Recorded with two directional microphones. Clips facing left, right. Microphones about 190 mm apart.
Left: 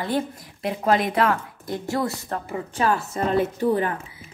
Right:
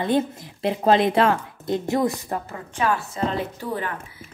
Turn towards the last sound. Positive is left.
turn(degrees=50)  # may be behind; listen again after turning